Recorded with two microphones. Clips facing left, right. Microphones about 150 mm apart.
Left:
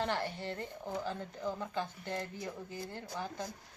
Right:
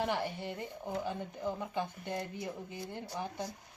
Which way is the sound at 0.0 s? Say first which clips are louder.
Right 1 dB; 10° right (ahead or behind).